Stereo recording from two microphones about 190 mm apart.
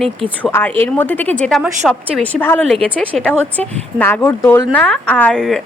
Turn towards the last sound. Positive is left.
turn(degrees=5)  # may be behind; listen again after turning